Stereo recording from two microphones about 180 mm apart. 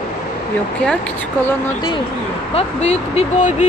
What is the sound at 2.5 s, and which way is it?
Speech, 35° left (ahead or behind).